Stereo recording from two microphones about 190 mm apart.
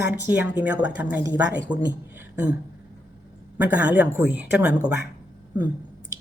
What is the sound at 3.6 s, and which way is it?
A woman's voice, 10° right (ahead or behind).